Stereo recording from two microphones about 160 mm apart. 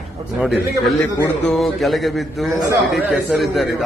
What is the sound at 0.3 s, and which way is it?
A man's voice, centre (ahead or behind).